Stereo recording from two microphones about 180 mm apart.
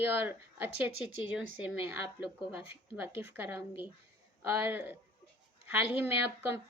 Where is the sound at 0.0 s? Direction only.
10° right (ahead or behind).